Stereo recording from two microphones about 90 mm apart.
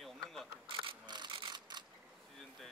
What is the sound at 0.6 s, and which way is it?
Camera, 60° right (ahead or behind).